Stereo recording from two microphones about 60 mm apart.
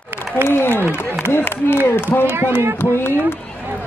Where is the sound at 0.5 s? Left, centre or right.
Left.